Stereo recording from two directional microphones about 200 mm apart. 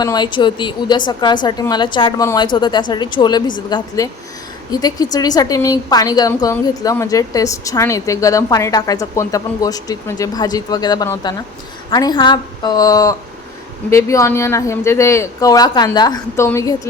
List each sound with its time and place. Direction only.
0.0 s a woman's voice: 20° left (ahead or behind)